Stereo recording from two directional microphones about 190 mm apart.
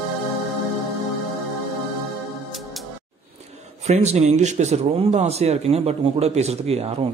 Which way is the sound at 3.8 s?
35° right (ahead or behind).